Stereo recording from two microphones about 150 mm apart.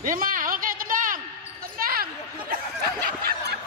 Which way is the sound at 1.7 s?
75° right (ahead or behind).